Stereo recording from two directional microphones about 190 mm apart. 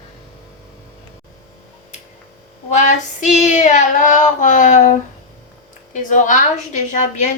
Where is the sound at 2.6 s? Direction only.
40° left (ahead or behind).